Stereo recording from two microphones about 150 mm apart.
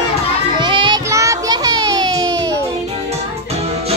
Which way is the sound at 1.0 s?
20° right (ahead or behind).